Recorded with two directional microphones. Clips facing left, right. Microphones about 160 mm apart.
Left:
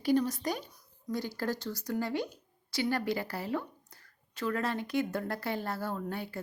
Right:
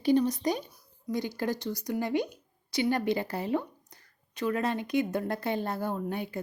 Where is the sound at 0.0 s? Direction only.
20° right (ahead or behind).